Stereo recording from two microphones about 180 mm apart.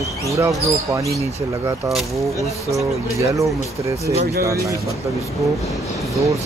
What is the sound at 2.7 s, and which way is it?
Speech, 15° right (ahead or behind).